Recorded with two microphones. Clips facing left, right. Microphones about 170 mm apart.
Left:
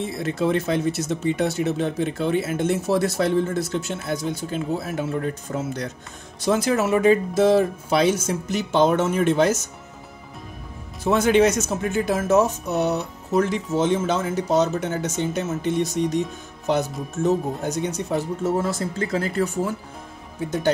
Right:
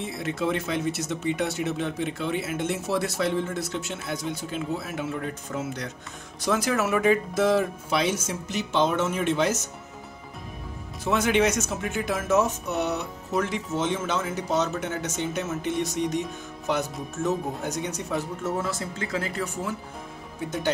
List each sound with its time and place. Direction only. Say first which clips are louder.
0.2 s speech: left 5 dB; 35° left (ahead or behind)
6.4 s speech: left 4 dB; 25° left (ahead or behind); by 9.5 s 45° left (ahead or behind)
11.1 s speech: left 5 dB; 35° left (ahead or behind)
17.2 s speech: left 5 dB; 30° left (ahead or behind)